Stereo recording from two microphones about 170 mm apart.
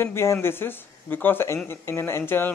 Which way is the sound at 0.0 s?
15° left (ahead or behind).